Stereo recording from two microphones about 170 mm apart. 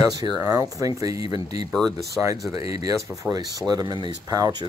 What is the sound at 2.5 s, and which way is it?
Speech, 20° right (ahead or behind).